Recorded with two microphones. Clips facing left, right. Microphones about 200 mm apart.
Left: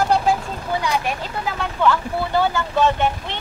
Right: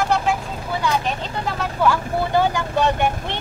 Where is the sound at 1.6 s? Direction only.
10° right (ahead or behind).